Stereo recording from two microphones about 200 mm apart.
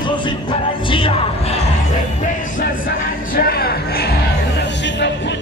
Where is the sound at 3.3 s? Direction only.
50° left (ahead or behind).